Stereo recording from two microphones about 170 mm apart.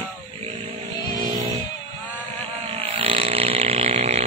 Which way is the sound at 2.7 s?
35° right (ahead or behind).